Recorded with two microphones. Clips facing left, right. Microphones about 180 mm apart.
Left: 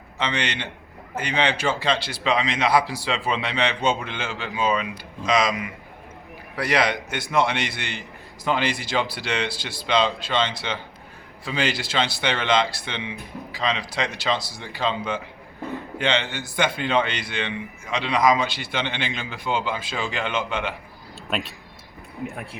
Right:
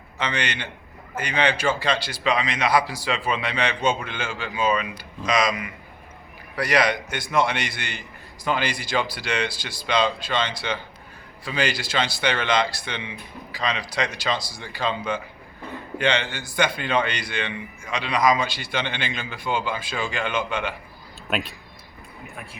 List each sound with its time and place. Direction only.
0.2 s a man's voice: 25° left (ahead or behind)
6.6 s a man's voice: 25° left (ahead or behind)
21.2 s speech: centre (ahead or behind)